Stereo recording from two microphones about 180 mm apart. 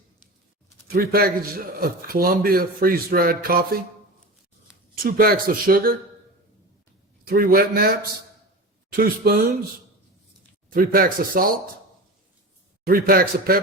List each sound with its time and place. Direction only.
0.9 s a man's voice: 55° right (ahead or behind)
5.0 s speech: 55° right (ahead or behind)
7.3 s a man's voice: 55° right (ahead or behind)
10.7 s speech: 55° right (ahead or behind)
12.8 s a man's voice: 55° right (ahead or behind)